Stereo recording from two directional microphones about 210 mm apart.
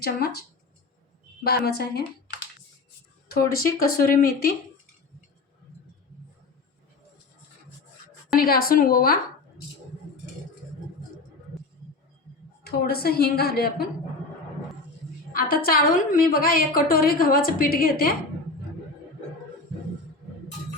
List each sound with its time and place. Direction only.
0.0 s a woman's voice: 50° left (ahead or behind)
1.5 s a woman's voice: 50° left (ahead or behind)
3.8 s a woman's voice: 45° left (ahead or behind)
8.4 s a woman's voice: 45° left (ahead or behind)
12.6 s a woman's voice: 45° left (ahead or behind)
15.3 s a woman's voice: 45° left (ahead or behind)